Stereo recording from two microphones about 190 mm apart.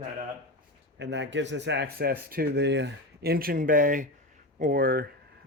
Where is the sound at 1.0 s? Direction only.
70° right (ahead or behind); by 5.1 s 50° right (ahead or behind).